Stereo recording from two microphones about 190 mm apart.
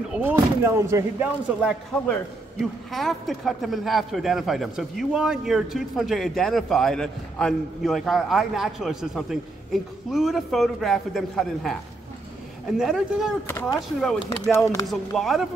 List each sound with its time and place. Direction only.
0.1 s speech: 10° right (ahead or behind)
2.6 s speech: centre (ahead or behind)
13.5 s speech: 10° left (ahead or behind)
14.5 s speech: 15° left (ahead or behind)
14.9 s speech: centre (ahead or behind)